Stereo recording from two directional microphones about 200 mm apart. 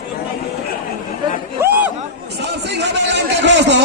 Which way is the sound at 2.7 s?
60° right (ahead or behind).